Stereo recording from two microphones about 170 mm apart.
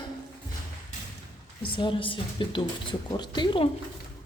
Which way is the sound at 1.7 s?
30° left (ahead or behind).